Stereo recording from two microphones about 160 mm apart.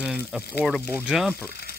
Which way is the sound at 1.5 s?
75° left (ahead or behind).